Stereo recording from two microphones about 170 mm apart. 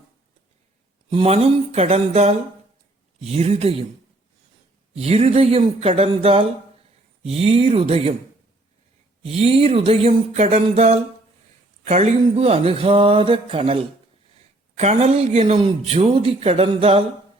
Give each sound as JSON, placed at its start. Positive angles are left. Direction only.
{"t": 1.1, "sound": "speech", "side_deg": -35}
{"t": 4.9, "sound": "speech", "side_deg": -40}
{"t": 9.2, "sound": "speech", "side_deg": -35}
{"t": 14.8, "sound": "speech", "side_deg": -40}